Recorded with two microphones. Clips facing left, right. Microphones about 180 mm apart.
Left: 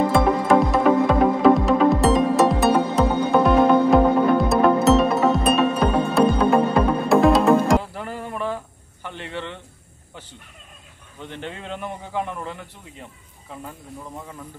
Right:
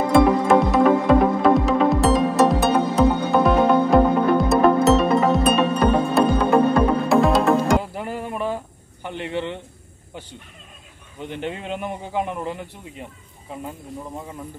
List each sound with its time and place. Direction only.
0.1 s music: centre (ahead or behind)
7.8 s music: 15° right (ahead or behind)
9.0 s a sound: 15° right (ahead or behind)
11.1 s speech: 15° right (ahead or behind)